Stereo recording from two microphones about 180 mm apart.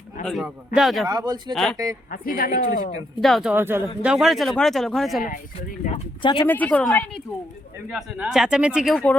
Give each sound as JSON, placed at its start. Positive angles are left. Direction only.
{"t": 0.3, "sound": "speech", "side_deg": 0}
{"t": 1.0, "sound": "speech", "side_deg": -20}
{"t": 2.0, "sound": "speech", "side_deg": 50}
{"t": 3.2, "sound": "speech", "side_deg": 0}
{"t": 3.5, "sound": "speech", "side_deg": -10}
{"t": 5.9, "sound": "speech", "side_deg": 30}
{"t": 6.5, "sound": "a woman's voice", "side_deg": 10}